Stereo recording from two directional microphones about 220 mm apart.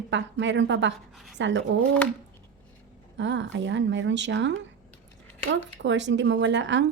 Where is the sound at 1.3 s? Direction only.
55° right (ahead or behind).